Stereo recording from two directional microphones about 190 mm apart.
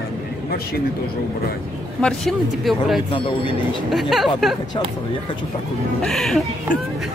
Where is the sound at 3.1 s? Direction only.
25° left (ahead or behind).